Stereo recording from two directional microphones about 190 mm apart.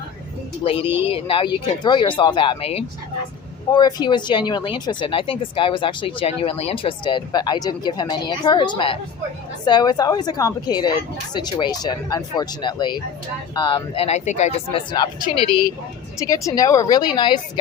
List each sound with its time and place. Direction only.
0.6 s speech: 30° left (ahead or behind)
3.7 s speech: 20° left (ahead or behind)